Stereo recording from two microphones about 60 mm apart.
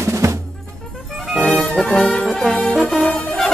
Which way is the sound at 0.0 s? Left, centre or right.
Right.